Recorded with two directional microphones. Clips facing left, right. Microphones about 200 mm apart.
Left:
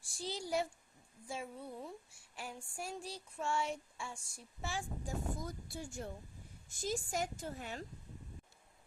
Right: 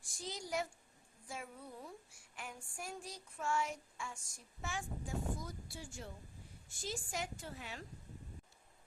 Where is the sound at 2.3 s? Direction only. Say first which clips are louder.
Left 3 dB; 30° left (ahead or behind).